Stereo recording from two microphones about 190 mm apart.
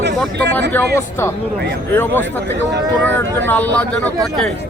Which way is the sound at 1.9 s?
10° left (ahead or behind).